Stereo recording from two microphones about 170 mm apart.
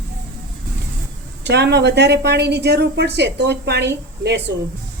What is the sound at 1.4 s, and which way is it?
Speech, 80° right.